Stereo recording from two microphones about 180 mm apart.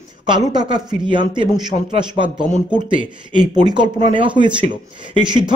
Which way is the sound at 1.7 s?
55° left (ahead or behind).